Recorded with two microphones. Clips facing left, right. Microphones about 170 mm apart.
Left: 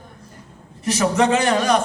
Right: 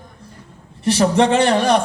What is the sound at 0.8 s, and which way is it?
Speech, 30° right (ahead or behind).